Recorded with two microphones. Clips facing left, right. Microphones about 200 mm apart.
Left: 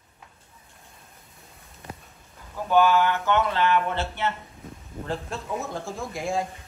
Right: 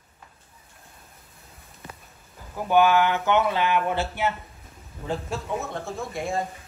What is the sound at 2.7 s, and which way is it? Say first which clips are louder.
Speech: right 1 dB; 15° right (ahead or behind).